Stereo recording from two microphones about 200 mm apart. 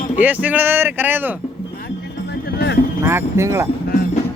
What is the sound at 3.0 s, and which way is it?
Speech, 15° right (ahead or behind).